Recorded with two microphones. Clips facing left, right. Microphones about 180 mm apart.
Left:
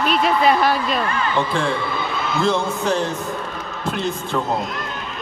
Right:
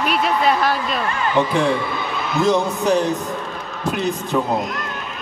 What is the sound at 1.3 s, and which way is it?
Speech, 15° right (ahead or behind).